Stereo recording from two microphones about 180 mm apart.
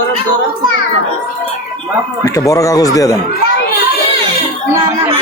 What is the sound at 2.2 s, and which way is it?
Speech, 20° left (ahead or behind).